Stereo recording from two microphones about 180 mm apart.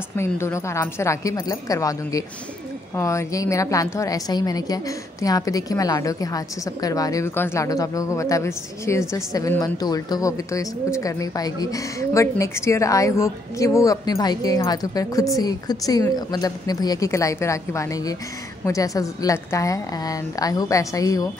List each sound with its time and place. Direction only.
0.2 s a woman's voice: 15° left (ahead or behind)